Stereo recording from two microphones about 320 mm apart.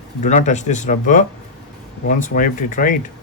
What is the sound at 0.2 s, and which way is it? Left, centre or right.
Speech, left.